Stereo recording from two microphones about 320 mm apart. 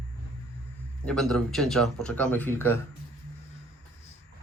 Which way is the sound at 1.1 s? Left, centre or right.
Centre.